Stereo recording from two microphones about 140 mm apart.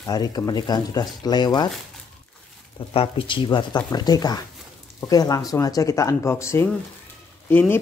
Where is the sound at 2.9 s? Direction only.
40° left (ahead or behind).